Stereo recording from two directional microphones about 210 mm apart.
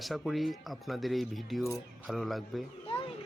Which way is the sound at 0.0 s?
Centre (ahead or behind).